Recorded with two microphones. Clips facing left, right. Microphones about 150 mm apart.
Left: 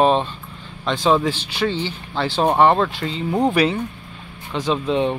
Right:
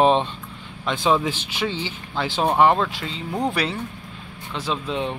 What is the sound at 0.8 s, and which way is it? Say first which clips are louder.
Speech: left 3 dB; 10° right (ahead or behind).